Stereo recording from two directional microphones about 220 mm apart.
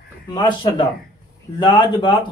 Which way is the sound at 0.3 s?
20° left (ahead or behind).